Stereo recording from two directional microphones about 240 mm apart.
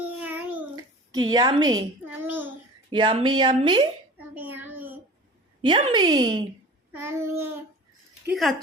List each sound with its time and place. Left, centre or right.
0.2 s child singing: centre
1.2 s a woman's voice: centre
2.0 s child singing: centre
2.9 s speech: right
4.4 s a sound: centre
5.6 s speech: centre
6.9 s child singing: centre
8.3 s speech: centre